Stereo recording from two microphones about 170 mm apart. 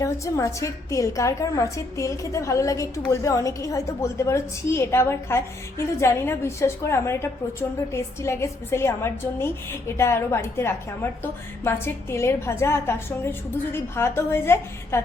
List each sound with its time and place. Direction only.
0.0 s a woman's voice: 20° left (ahead or behind)